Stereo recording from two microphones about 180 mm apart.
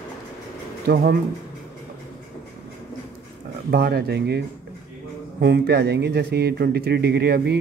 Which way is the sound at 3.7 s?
60° right (ahead or behind).